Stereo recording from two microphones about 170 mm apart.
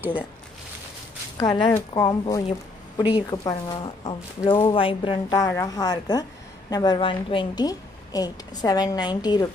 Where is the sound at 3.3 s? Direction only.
25° left (ahead or behind).